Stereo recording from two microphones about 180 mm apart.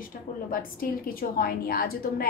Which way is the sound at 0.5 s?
50° left (ahead or behind).